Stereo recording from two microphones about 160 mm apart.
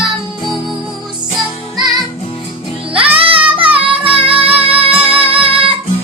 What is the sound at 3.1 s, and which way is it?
Music, 35° right (ahead or behind).